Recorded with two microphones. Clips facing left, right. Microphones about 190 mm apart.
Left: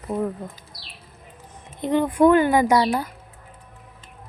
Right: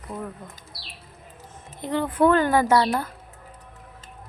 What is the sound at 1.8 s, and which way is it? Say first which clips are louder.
Speech: left 4 dB; 20° left (ahead or behind).